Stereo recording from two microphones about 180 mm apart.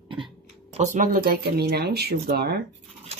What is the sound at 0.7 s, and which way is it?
Speech, 40° right (ahead or behind).